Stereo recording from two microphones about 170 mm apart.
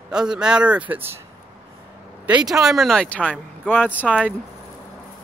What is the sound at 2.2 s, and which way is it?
Speech, 5° right (ahead or behind).